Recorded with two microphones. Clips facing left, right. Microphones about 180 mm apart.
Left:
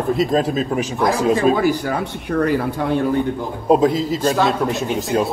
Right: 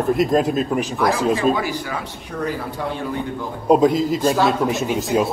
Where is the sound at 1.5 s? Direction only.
45° left (ahead or behind); by 2.5 s 60° left (ahead or behind).